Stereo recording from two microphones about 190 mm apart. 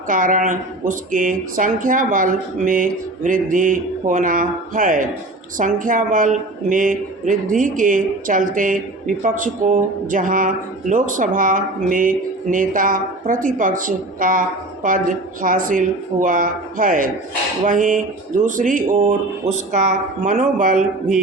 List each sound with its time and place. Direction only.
0.1 s speech: 45° right (ahead or behind)